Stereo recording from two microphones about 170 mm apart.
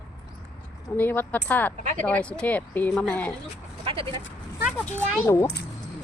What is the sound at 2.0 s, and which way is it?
Speech, 5° left (ahead or behind).